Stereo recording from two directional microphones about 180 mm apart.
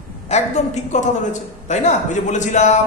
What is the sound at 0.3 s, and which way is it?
A man's voice, 40° left (ahead or behind).